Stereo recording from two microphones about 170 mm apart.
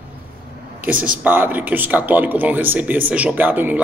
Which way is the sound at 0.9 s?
50° right (ahead or behind).